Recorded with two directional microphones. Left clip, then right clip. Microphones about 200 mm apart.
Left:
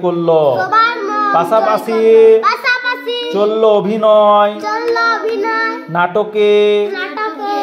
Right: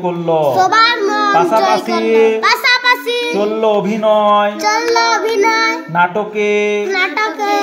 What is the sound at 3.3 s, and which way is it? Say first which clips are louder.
A man's voice: left 5 dB; 25° left (ahead or behind).